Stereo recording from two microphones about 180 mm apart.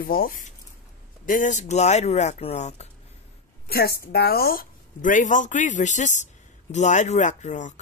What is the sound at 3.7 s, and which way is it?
Speech, 60° left (ahead or behind).